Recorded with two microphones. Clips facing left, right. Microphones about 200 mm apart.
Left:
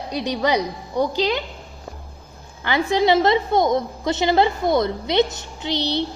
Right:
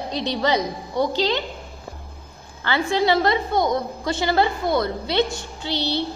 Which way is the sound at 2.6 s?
15° left (ahead or behind).